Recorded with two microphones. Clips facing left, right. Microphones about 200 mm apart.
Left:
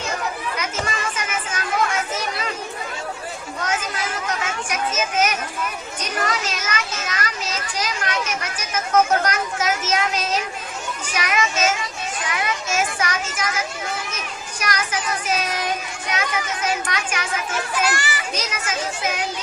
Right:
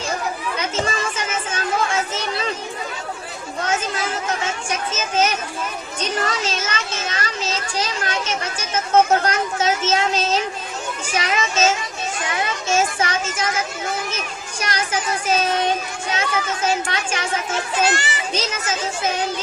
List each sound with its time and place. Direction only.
0.5 s children playing: 30° right (ahead or behind)
3.7 s children playing: 25° right (ahead or behind)
6.0 s a child's voice: 30° right (ahead or behind)